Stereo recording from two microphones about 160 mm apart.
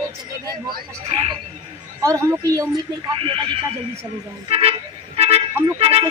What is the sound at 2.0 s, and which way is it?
Speech, 20° right (ahead or behind).